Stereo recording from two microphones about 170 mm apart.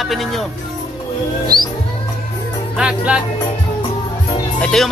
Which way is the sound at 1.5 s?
60° right (ahead or behind).